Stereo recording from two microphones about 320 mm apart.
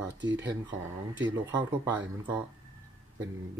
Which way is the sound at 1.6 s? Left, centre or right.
Centre.